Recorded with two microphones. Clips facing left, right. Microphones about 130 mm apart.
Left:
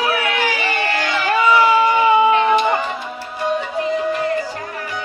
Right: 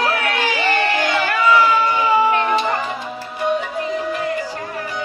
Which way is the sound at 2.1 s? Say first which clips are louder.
Left 3 dB; 15° left (ahead or behind).